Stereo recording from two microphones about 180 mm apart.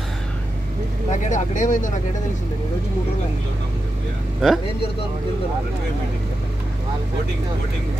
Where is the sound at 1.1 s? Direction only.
45° left (ahead or behind).